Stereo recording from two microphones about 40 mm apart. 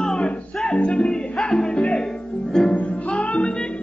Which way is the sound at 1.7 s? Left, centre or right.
Left.